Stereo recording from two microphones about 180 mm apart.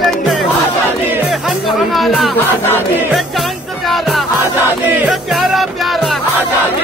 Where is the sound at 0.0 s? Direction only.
Centre (ahead or behind).